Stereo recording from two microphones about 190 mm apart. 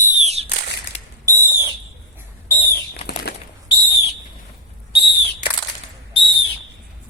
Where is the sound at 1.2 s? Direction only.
15° right (ahead or behind).